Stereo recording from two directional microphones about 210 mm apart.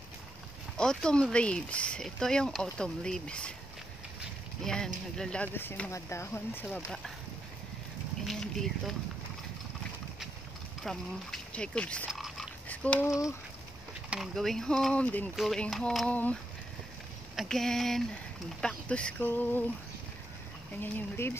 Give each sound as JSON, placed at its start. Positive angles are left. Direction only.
{"t": 0.7, "sound": "speech", "side_deg": 5}
{"t": 4.6, "sound": "speech", "side_deg": 0}
{"t": 8.3, "sound": "speech", "side_deg": 0}
{"t": 10.8, "sound": "speech", "side_deg": 0}
{"t": 17.4, "sound": "speech", "side_deg": 0}
{"t": 20.8, "sound": "speech", "side_deg": 10}